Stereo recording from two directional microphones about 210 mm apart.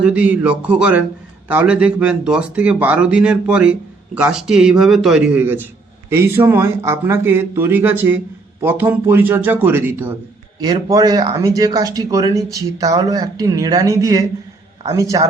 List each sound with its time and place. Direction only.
0.0 s speech: 5° right (ahead or behind)